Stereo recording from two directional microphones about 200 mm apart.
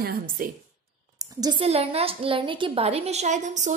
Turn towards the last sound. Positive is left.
turn(degrees=-35)  # may be behind; listen again after turning